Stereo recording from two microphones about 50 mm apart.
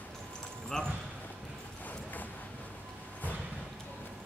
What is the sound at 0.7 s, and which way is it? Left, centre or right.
Speech, centre.